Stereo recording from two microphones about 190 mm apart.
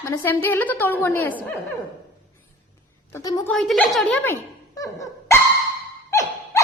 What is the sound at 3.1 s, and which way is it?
Speech, 20° left (ahead or behind).